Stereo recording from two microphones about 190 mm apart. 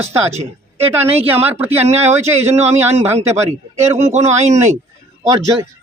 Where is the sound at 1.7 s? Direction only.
35° right (ahead or behind).